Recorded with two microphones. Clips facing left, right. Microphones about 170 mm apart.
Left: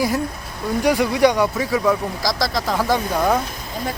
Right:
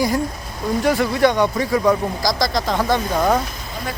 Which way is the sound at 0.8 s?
15° left (ahead or behind).